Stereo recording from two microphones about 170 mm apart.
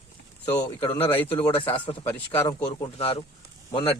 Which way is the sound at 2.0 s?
15° left (ahead or behind).